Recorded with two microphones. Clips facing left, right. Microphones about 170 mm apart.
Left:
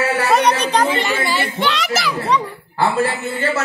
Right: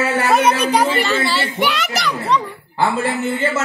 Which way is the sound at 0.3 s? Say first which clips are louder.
Right 1 dB; 5° right (ahead or behind).